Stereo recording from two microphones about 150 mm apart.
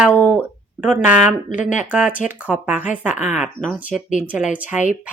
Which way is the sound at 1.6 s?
55° left (ahead or behind).